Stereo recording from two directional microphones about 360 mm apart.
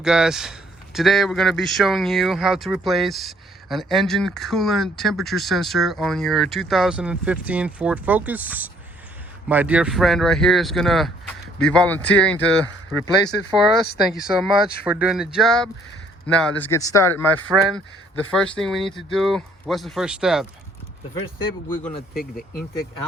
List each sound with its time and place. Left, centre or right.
0.0 s a man's voice: centre
14.3 s a man's voice: centre
22.2 s speech: left